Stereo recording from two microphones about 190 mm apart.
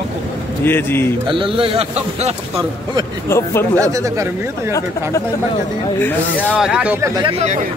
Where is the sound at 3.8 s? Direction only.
15° right (ahead or behind).